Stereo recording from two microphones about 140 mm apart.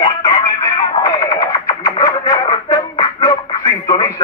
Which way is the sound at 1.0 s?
25° left (ahead or behind).